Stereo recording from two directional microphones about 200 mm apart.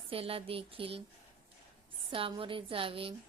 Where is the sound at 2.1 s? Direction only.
25° right (ahead or behind).